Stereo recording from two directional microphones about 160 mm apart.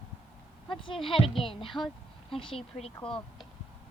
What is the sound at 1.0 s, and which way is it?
Speech, 35° left (ahead or behind).